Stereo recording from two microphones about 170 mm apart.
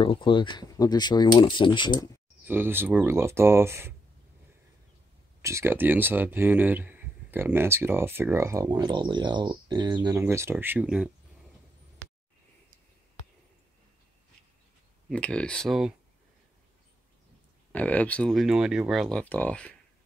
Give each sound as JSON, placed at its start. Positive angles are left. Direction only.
{"t": 0.0, "sound": "speech", "side_deg": 30}
{"t": 2.4, "sound": "speech", "side_deg": -10}
{"t": 5.4, "sound": "speech", "side_deg": -15}
{"t": 15.0, "sound": "speech", "side_deg": 5}
{"t": 17.7, "sound": "speech", "side_deg": 10}